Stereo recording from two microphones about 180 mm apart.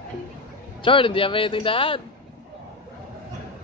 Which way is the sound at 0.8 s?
30° left (ahead or behind).